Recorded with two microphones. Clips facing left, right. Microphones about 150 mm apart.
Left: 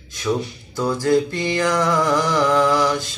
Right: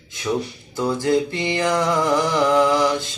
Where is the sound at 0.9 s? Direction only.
20° right (ahead or behind).